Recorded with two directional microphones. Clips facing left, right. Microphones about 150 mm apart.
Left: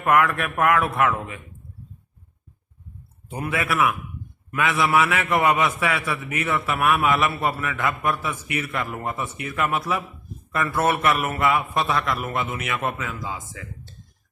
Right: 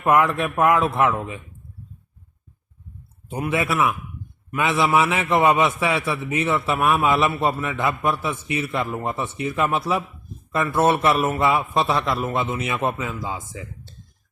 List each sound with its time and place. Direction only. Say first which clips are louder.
0.0 s a man's voice: right 2 dB; 20° right (ahead or behind)
3.5 s a man's voice: right 1 dB; 25° right (ahead or behind)